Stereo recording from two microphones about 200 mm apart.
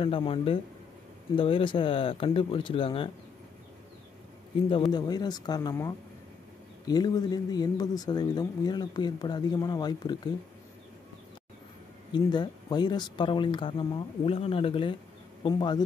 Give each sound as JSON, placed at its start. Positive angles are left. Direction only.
{"t": 0.0, "sound": "speech", "side_deg": 25}
{"t": 4.9, "sound": "speech", "side_deg": 20}
{"t": 12.1, "sound": "speech", "side_deg": 20}